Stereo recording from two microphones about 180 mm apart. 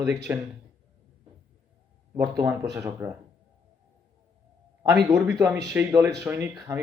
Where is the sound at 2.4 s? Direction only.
15° right (ahead or behind).